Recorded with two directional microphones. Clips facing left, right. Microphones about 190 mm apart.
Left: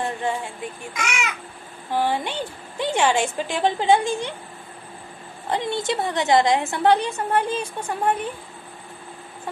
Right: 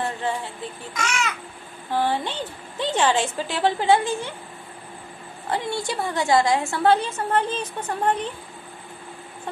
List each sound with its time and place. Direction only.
1.0 s a woman's voice: 10° left (ahead or behind)
5.5 s a woman's voice: 20° left (ahead or behind)